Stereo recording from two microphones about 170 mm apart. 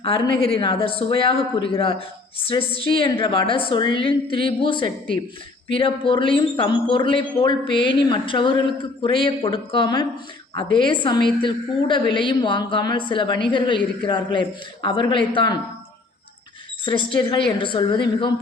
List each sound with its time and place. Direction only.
0.0 s speech: 30° left (ahead or behind)
16.8 s speech: 30° left (ahead or behind)